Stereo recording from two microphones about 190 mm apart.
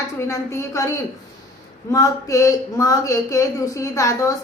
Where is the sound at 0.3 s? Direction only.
15° left (ahead or behind).